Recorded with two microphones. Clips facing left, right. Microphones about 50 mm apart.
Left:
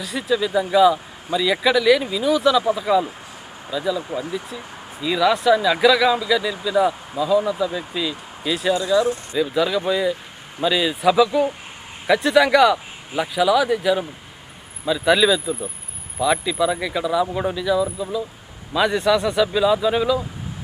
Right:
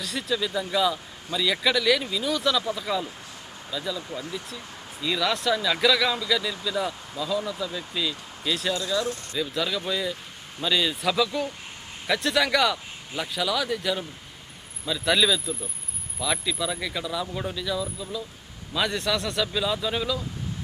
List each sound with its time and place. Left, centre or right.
0.0 s speech: centre